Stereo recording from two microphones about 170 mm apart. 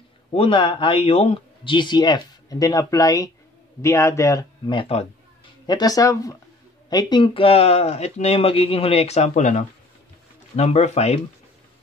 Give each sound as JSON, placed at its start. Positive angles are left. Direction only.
{"t": 0.3, "sound": "speech", "side_deg": 30}
{"t": 5.7, "sound": "speech", "side_deg": 20}